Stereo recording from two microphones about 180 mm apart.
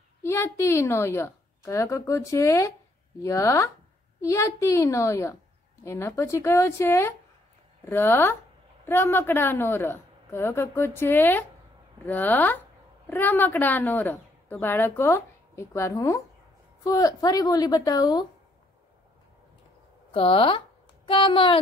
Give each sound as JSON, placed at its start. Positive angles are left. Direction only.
{"t": 0.2, "sound": "a woman's voice", "side_deg": 15}
{"t": 20.1, "sound": "a woman's voice", "side_deg": 30}